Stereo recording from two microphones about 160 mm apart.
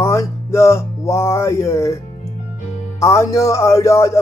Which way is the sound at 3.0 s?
20° left (ahead or behind).